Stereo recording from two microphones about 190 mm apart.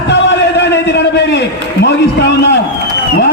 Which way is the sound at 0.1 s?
65° left (ahead or behind).